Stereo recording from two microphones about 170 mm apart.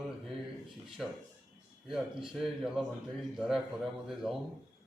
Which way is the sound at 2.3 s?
Centre (ahead or behind).